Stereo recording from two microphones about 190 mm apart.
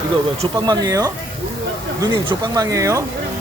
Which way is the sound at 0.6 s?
20° right (ahead or behind).